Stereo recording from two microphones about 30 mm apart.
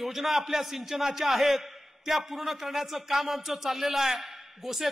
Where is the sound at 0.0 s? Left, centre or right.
Centre.